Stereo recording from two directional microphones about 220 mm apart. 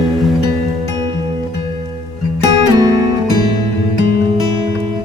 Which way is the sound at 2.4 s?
15° right (ahead or behind).